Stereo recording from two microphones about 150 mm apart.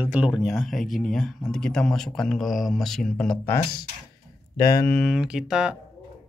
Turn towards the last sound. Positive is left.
turn(degrees=-5)  # may be behind; listen again after turning